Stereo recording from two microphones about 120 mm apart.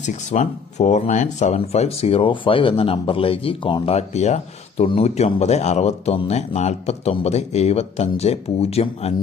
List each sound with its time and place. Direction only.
0.0 s speech: 80° left; by 3.9 s 45° left (ahead or behind)
3.9 s speech: 70° left (ahead or behind)